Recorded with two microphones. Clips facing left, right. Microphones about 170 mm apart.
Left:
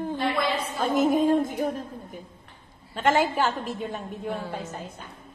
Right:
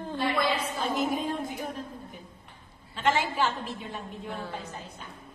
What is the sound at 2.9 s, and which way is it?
A woman's voice, 45° left (ahead or behind).